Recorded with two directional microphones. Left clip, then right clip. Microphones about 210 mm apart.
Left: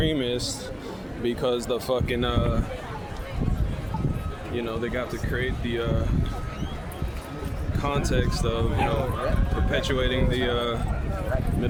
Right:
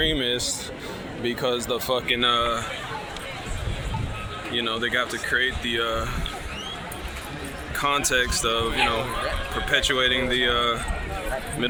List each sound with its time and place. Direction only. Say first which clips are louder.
0.0 s a sound: right 3 dB; 15° left (ahead or behind)
1.2 s speech: even; 15° left (ahead or behind); by 2.6 s centre (ahead or behind)
4.5 s speech: right 5 dB; centre (ahead or behind)
7.8 s speech: right 5 dB; centre (ahead or behind)
9.6 s speech: right 5 dB; 5° left (ahead or behind)